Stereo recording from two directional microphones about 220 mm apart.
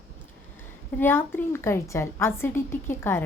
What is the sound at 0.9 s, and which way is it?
A woman's voice, 10° left (ahead or behind).